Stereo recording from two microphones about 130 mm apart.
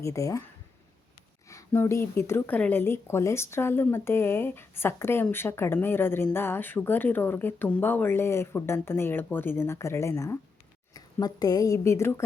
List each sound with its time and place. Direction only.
0.0 s a woman's voice: 25° left (ahead or behind)
1.5 s a woman's voice: 20° left (ahead or behind)